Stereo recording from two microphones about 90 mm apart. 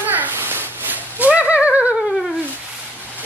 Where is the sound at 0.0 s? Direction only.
20° right (ahead or behind).